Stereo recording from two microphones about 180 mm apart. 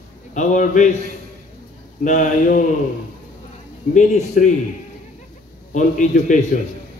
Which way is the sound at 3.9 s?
40° left (ahead or behind).